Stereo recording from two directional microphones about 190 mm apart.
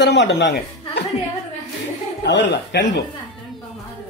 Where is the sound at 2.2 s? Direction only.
65° left (ahead or behind).